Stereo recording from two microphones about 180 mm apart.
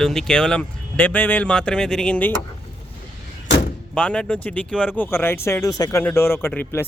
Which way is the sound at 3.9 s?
5° left (ahead or behind).